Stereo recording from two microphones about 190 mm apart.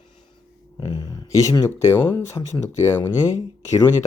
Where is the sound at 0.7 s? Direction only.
20° left (ahead or behind).